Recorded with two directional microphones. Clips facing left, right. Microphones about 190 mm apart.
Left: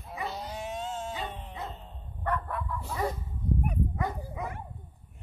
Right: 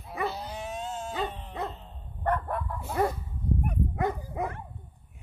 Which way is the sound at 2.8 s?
55° right (ahead or behind).